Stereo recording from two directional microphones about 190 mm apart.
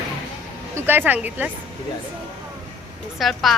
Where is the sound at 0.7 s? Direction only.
10° right (ahead or behind).